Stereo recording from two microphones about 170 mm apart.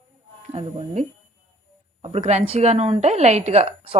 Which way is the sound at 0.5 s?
35° right (ahead or behind).